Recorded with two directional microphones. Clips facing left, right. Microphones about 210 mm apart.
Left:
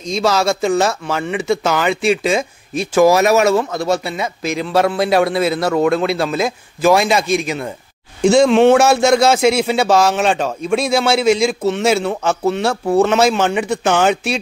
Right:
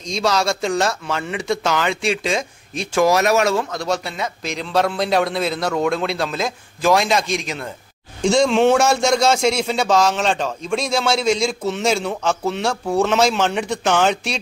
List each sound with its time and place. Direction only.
0.0 s speech: 5° left (ahead or behind)